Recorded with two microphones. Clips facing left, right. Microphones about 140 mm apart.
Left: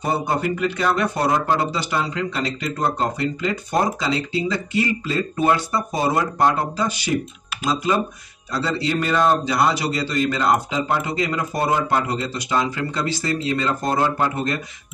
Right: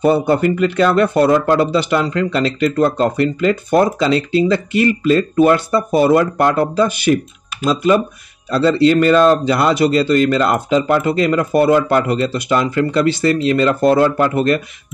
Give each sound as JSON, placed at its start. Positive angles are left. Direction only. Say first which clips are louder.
{"t": 0.0, "sound": "speech", "louder": "right 9 dB", "side_deg": -60}
{"t": 8.5, "sound": "speech", "louder": "right 11 dB", "side_deg": -65}